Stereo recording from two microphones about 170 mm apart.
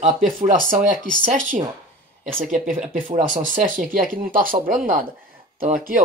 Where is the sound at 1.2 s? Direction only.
50° right (ahead or behind).